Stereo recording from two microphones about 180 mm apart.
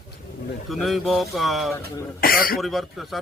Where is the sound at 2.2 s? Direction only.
55° left (ahead or behind).